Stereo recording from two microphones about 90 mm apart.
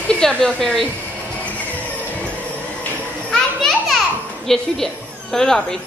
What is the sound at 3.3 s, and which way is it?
Children playing, centre (ahead or behind).